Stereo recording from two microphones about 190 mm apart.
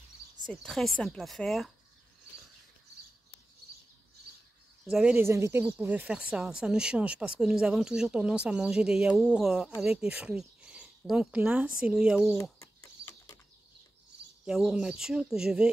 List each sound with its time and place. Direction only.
0.5 s speech: centre (ahead or behind)
4.8 s speech: 5° right (ahead or behind)
12.4 s bird: 15° left (ahead or behind)
14.4 s speech: centre (ahead or behind)